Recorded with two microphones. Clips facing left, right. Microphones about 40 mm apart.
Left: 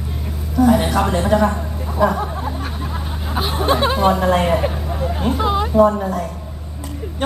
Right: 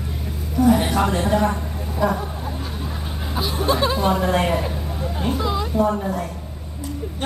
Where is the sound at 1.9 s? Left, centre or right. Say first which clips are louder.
Left 4 dB; left.